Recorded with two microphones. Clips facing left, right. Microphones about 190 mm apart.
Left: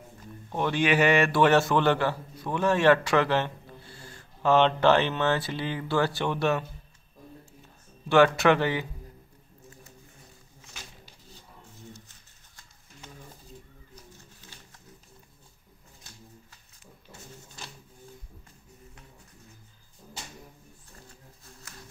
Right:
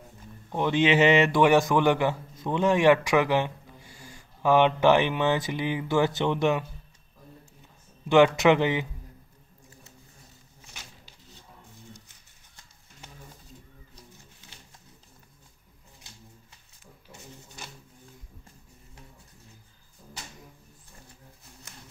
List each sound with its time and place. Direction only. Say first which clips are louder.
0.5 s a man's voice: right 2 dB; 20° right (ahead or behind)
8.1 s a man's voice: right 1 dB; 20° right (ahead or behind)